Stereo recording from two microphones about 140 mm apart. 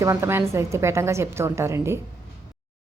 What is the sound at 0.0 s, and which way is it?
A woman's voice, 20° right (ahead or behind).